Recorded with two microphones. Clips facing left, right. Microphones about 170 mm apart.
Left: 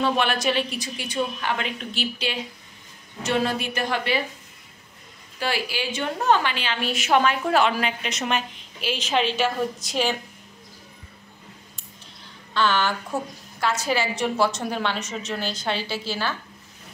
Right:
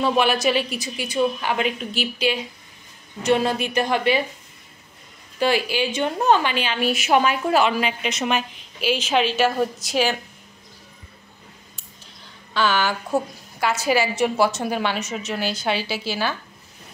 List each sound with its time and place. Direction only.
0.0 s a woman's voice: 10° right (ahead or behind)
5.4 s a woman's voice: 20° right (ahead or behind); by 10.1 s 5° right (ahead or behind)
12.5 s a woman's voice: 5° right (ahead or behind)